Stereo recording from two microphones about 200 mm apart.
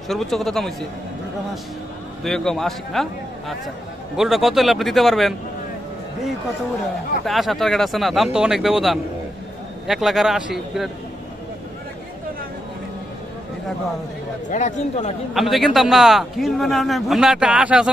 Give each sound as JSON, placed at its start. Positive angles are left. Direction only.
{"t": 0.1, "sound": "a man's voice", "side_deg": 0}
{"t": 2.2, "sound": "a man's voice", "side_deg": 0}
{"t": 7.2, "sound": "a man's voice", "side_deg": 0}
{"t": 14.5, "sound": "speech", "side_deg": 35}
{"t": 15.3, "sound": "a man's voice", "side_deg": 0}